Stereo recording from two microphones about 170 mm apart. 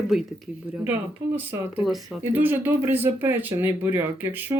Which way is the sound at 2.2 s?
10° right (ahead or behind).